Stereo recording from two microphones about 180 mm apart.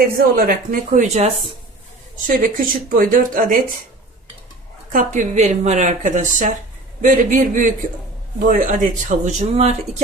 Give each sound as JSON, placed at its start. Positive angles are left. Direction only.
{"t": 0.2, "sound": "speech", "side_deg": -50}
{"t": 2.2, "sound": "speech", "side_deg": -50}
{"t": 4.9, "sound": "speech", "side_deg": -45}